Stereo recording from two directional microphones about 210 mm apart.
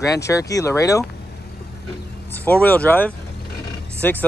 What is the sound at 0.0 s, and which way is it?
Speech, 15° left (ahead or behind).